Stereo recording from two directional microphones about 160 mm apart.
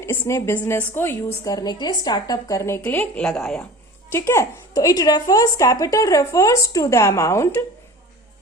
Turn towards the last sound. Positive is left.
turn(degrees=15)  # may be behind; listen again after turning